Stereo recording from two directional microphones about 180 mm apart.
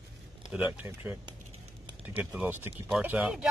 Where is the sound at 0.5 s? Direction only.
10° right (ahead or behind).